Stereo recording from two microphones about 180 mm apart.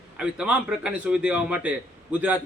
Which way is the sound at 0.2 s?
5° right (ahead or behind).